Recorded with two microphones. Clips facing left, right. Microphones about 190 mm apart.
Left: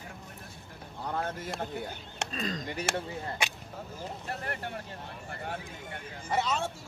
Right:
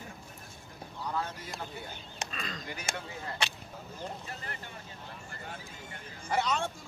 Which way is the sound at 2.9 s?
65° left (ahead or behind).